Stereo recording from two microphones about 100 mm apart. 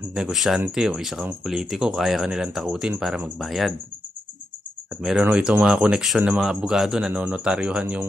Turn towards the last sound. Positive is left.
turn(degrees=-10)  # may be behind; listen again after turning